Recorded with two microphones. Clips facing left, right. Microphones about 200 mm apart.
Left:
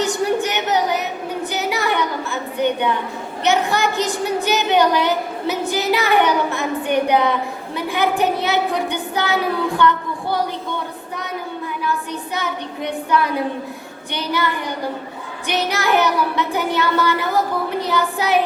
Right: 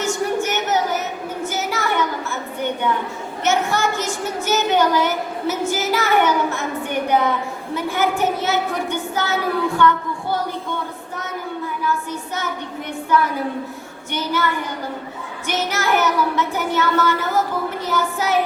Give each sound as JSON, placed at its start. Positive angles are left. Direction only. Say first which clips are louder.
{"t": 0.0, "sound": "a sound", "louder": "left 2 dB", "side_deg": 15}
{"t": 3.4, "sound": "a woman's voice", "louder": "left 1 dB", "side_deg": 15}
{"t": 14.1, "sound": "a woman's voice", "louder": "even", "side_deg": 15}